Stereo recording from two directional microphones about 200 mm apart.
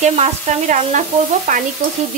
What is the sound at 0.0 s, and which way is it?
Sizzle, 35° right (ahead or behind).